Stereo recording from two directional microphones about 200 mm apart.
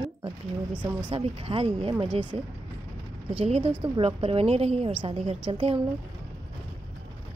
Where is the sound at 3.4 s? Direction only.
30° right (ahead or behind).